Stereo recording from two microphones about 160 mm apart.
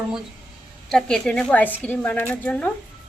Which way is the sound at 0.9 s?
5° left (ahead or behind).